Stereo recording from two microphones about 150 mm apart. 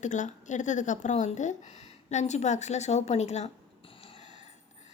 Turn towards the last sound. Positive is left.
turn(degrees=50)  # may be behind; listen again after turning